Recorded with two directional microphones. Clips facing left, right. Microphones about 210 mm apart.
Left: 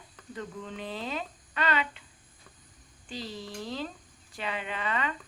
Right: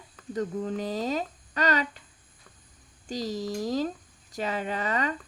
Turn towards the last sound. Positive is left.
turn(degrees=-40)  # may be behind; listen again after turning